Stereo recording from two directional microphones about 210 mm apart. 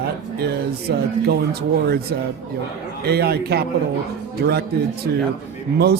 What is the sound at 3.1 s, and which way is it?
Speech, 50° right (ahead or behind).